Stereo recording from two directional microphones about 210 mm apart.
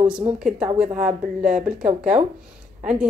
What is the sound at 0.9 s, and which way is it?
Speech, 5° right (ahead or behind).